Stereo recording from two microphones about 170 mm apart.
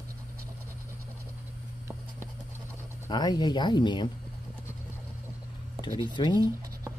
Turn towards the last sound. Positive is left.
turn(degrees=25)  # may be behind; listen again after turning